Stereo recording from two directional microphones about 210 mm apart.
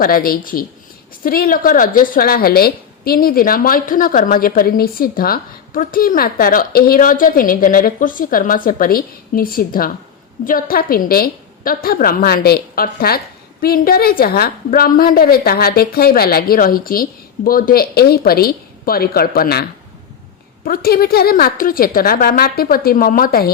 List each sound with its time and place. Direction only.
0.0 s a woman's voice: 45° left (ahead or behind)
20.7 s a woman's voice: 45° left (ahead or behind)